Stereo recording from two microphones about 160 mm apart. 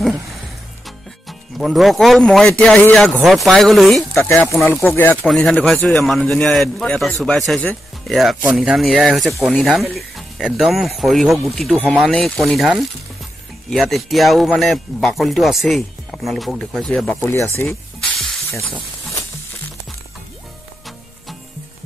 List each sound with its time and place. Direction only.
0.8 s speech: centre (ahead or behind)
4.3 s speech: 15° left (ahead or behind)
17.2 s speech: 15° left (ahead or behind)